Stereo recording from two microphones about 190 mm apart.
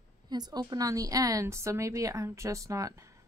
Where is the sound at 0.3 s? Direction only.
20° right (ahead or behind).